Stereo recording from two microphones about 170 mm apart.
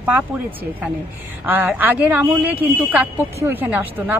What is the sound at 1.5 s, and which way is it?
Speech, 10° right (ahead or behind).